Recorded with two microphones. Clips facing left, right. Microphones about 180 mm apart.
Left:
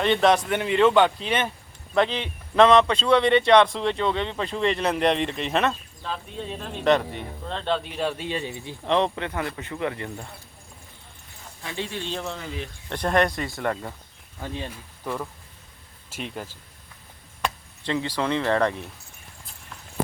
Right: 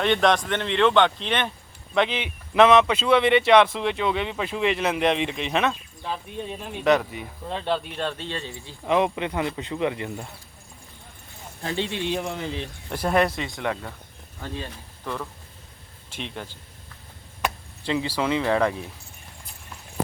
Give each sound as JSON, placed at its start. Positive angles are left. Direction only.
{"t": 0.0, "sound": "speech", "side_deg": 0}
{"t": 7.9, "sound": "speech", "side_deg": 10}
{"t": 8.8, "sound": "speech", "side_deg": -10}
{"t": 11.6, "sound": "a man's voice", "side_deg": -35}
{"t": 11.9, "sound": "speech", "side_deg": -15}
{"t": 15.0, "sound": "speech", "side_deg": 10}
{"t": 17.4, "sound": "speech", "side_deg": -10}